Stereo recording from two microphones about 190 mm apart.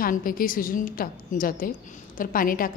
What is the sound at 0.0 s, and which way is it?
A woman's voice, 45° left (ahead or behind).